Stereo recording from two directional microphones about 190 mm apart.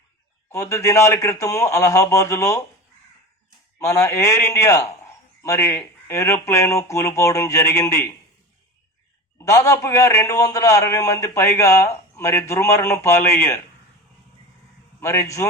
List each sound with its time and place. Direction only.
0.5 s a man's voice: 15° left (ahead or behind)
3.8 s a man's voice: 15° left (ahead or behind)
9.4 s a man's voice: 15° left (ahead or behind)
15.0 s a man's voice: 15° left (ahead or behind)